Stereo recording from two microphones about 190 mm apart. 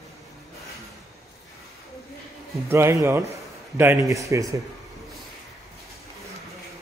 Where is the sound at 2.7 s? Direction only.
15° right (ahead or behind).